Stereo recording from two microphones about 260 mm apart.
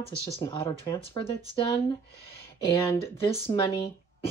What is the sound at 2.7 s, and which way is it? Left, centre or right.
Speech, centre.